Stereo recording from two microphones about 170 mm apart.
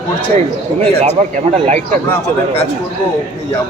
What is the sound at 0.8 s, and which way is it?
Speech, 40° right (ahead or behind).